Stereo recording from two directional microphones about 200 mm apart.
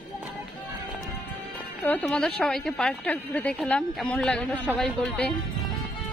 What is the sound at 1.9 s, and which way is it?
A woman's voice, 10° left (ahead or behind).